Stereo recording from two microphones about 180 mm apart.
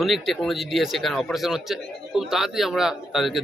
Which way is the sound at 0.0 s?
Centre (ahead or behind).